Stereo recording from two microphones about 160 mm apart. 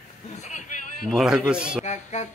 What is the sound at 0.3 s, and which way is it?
Vehicle, 50° left (ahead or behind).